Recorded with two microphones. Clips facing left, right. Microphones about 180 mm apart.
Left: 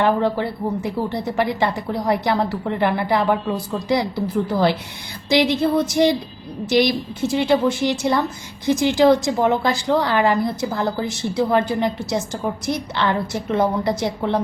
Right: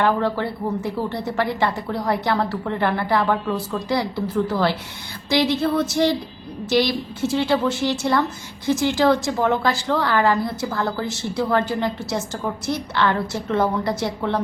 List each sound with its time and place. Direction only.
0.0 s speech: 15° left (ahead or behind)